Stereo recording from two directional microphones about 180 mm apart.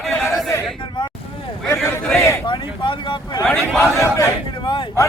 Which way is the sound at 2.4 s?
25° left (ahead or behind).